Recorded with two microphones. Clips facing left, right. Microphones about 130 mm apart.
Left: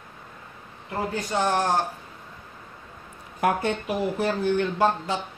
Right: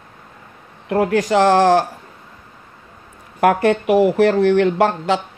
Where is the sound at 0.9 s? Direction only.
85° right.